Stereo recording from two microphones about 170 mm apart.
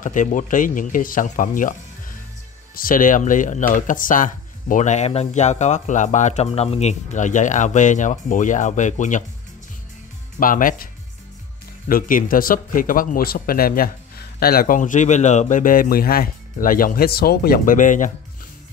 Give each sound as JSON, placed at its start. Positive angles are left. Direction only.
{"t": 0.0, "sound": "speech", "side_deg": 50}
{"t": 10.4, "sound": "speech", "side_deg": 55}
{"t": 11.9, "sound": "speech", "side_deg": 55}